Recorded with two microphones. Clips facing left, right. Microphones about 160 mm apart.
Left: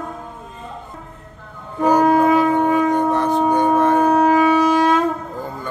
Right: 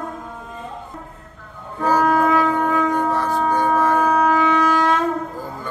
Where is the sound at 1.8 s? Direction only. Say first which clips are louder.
Left 3 dB; 20° left (ahead or behind).